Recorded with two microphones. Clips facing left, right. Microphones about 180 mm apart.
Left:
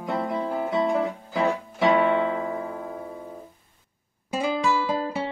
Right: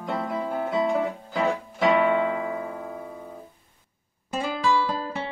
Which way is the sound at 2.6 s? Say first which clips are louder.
Left 1 dB; centre (ahead or behind).